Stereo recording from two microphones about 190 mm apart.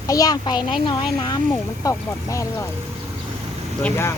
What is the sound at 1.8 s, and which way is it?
Speech, 15° left (ahead or behind).